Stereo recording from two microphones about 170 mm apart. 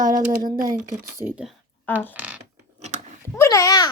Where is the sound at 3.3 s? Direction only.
15° left (ahead or behind).